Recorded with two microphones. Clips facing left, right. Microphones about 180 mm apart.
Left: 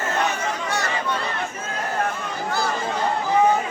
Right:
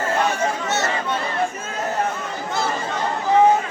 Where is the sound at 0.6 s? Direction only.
25° right (ahead or behind).